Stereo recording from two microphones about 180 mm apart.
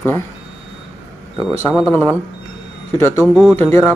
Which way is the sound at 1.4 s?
5° right (ahead or behind).